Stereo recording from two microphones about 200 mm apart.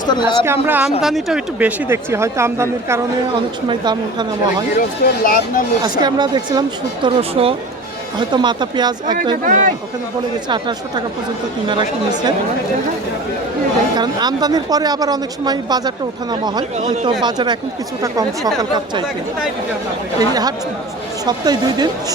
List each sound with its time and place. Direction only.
0.0 s a woman's voice: 20° left (ahead or behind)
0.4 s a woman's voice: 10° right (ahead or behind)
5.2 s speech: 45° left (ahead or behind)
5.8 s a woman's voice: 20° right (ahead or behind)
9.4 s speech: 40° right (ahead or behind)
10.5 s a woman's voice: 20° right (ahead or behind)
13.9 s a woman's voice: 20° right (ahead or behind)
20.1 s a woman's voice: 20° right (ahead or behind)